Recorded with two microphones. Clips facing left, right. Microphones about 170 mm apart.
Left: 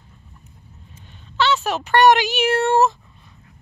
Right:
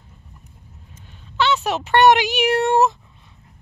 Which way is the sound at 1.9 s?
20° right (ahead or behind).